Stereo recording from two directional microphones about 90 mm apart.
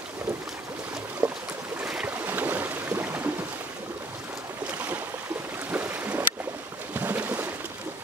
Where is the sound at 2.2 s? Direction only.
20° right (ahead or behind).